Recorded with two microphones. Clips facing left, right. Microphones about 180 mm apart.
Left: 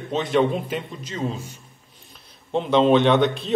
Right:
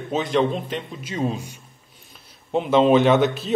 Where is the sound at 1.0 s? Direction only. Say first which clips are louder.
Right 3 dB; 15° right (ahead or behind).